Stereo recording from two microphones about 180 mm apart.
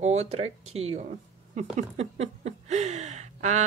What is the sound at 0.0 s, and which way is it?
Speech, 35° right (ahead or behind).